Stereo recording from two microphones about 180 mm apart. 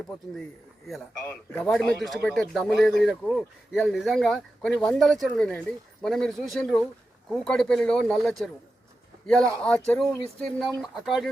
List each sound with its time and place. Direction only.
1.3 s a man's voice: 10° left (ahead or behind)
1.7 s speech: centre (ahead or behind)